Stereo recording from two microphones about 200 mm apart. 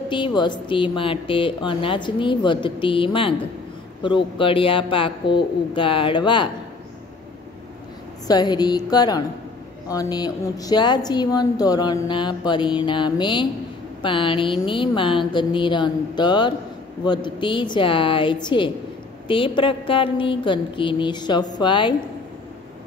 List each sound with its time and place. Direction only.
0.1 s a woman's voice: 25° left (ahead or behind)
8.3 s a woman's voice: 20° left (ahead or behind)